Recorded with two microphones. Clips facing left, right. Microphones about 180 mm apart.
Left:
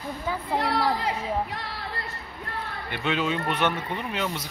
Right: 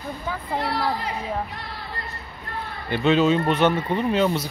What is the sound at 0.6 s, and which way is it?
Speech, 90° left.